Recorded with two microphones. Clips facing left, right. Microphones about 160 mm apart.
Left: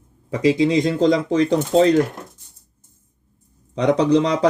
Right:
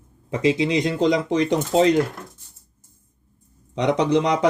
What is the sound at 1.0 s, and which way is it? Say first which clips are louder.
Speech: left 2 dB; 40° left (ahead or behind).